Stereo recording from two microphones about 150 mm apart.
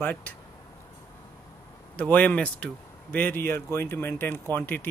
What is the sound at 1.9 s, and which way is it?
Speech, 10° left (ahead or behind).